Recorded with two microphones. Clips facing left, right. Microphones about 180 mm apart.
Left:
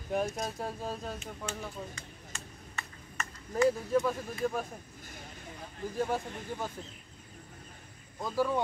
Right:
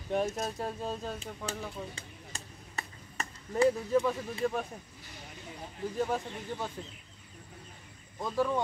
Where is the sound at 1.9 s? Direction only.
35° right (ahead or behind).